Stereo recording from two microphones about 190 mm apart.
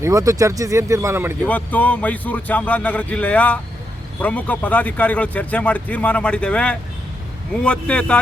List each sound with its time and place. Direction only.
0.0 s speech: 15° right (ahead or behind)
1.5 s a man's voice: 10° left (ahead or behind)